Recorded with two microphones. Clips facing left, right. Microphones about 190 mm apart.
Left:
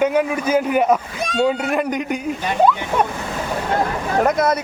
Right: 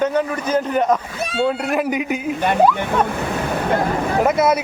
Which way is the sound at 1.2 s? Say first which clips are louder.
Left 1 dB; 5° right (ahead or behind).